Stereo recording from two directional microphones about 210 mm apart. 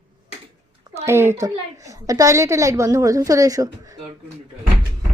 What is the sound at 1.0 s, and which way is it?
A woman's voice, 10° right (ahead or behind).